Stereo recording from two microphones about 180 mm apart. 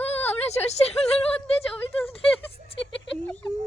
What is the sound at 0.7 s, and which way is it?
Speech, 35° left (ahead or behind).